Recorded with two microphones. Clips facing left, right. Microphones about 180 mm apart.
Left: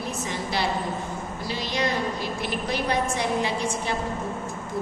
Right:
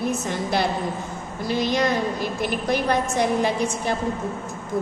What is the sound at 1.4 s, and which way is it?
A woman's voice, 50° right (ahead or behind).